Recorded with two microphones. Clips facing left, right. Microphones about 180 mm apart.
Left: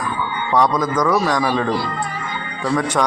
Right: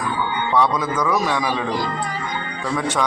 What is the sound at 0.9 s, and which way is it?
Speech, 15° right (ahead or behind).